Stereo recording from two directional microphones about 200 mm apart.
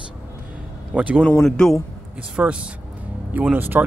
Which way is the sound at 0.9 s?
5° right (ahead or behind).